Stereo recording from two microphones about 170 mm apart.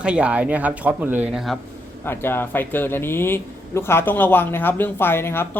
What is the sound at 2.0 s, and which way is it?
Speech, 15° left (ahead or behind).